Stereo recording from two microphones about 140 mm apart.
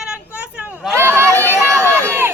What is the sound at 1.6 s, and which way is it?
Run, 15° right (ahead or behind).